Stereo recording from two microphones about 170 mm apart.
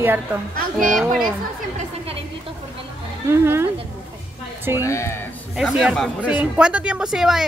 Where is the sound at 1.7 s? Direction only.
35° right (ahead or behind).